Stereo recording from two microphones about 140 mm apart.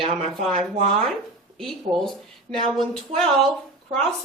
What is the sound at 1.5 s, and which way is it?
Speech, centre (ahead or behind).